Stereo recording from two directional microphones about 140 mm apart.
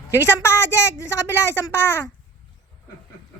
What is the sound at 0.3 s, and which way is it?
Speech, 15° left (ahead or behind).